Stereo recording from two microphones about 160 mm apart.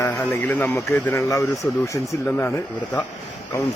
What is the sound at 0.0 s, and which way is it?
A man's voice, 15° left (ahead or behind).